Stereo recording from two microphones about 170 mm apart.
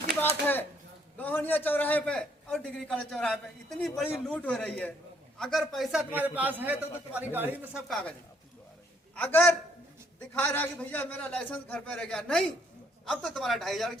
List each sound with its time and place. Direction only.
1.2 s a man's voice: 10° left (ahead or behind); by 7.8 s 10° right (ahead or behind)
7.9 s speech: centre (ahead or behind)
9.1 s a man's voice: 10° left (ahead or behind)